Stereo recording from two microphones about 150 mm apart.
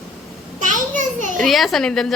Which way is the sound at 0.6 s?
60° right (ahead or behind).